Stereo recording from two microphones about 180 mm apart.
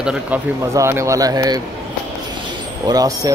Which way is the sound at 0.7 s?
15° right (ahead or behind).